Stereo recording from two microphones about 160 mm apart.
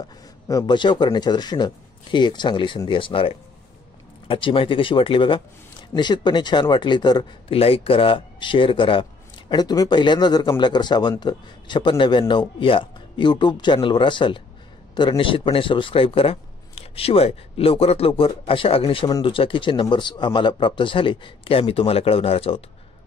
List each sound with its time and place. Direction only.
0.5 s a man's voice: 25° left (ahead or behind)